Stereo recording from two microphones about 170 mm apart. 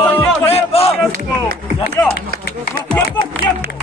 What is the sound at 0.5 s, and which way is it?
Speech, 35° left (ahead or behind).